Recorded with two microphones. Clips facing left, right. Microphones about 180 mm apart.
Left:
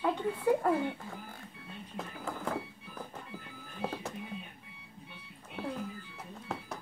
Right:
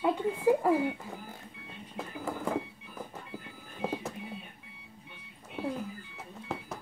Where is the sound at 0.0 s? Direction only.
10° right (ahead or behind).